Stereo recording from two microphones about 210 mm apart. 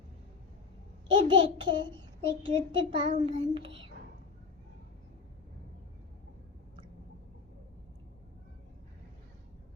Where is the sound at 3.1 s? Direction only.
35° right (ahead or behind).